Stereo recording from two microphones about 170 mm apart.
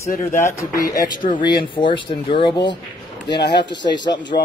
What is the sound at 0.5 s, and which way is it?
Speech, 20° left (ahead or behind).